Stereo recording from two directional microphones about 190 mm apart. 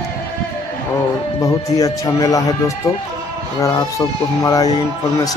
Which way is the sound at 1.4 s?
20° left (ahead or behind).